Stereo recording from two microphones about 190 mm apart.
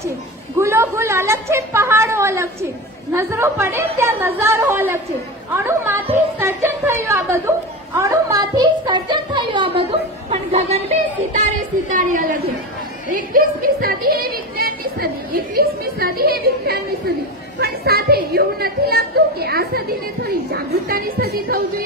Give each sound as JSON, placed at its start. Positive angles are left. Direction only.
{"t": 0.6, "sound": "a woman's voice", "side_deg": -15}
{"t": 6.4, "sound": "a sound", "side_deg": -15}
{"t": 17.6, "sound": "speech", "side_deg": -55}